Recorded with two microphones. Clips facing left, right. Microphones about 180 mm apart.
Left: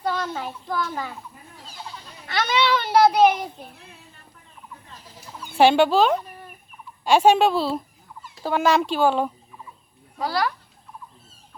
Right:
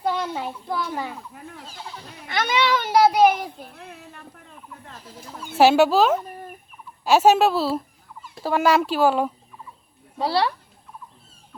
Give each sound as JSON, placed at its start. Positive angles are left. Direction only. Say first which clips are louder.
{"t": 0.0, "sound": "a sound", "louder": "right 1 dB", "side_deg": -15}
{"t": 0.7, "sound": "a child's voice", "louder": "even", "side_deg": -15}
{"t": 2.2, "sound": "a child's voice", "louder": "even", "side_deg": -15}
{"t": 3.8, "sound": "a sound", "louder": "right 7 dB", "side_deg": -65}
{"t": 5.5, "sound": "speech", "louder": "right 1 dB", "side_deg": -5}
{"t": 10.2, "sound": "speech", "louder": "right 3 dB", "side_deg": -30}